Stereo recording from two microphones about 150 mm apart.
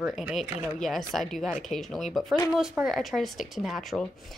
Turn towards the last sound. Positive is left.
turn(degrees=0)  # may be behind; listen again after turning